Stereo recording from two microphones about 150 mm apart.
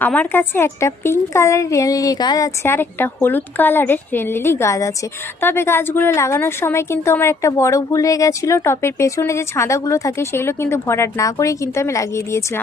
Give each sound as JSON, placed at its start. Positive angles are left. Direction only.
{"t": 0.0, "sound": "a woman's voice", "side_deg": 10}